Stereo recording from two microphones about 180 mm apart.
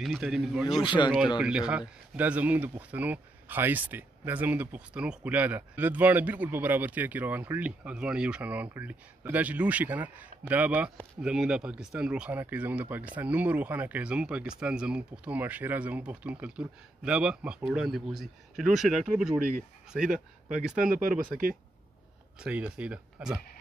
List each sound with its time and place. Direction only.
0.0 s speech: centre (ahead or behind)
20.0 s speech: 45° right (ahead or behind)
20.6 s speech: 5° right (ahead or behind)
22.4 s speech: 5° right (ahead or behind)